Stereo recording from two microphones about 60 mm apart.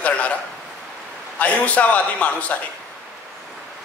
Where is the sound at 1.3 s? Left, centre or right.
Left.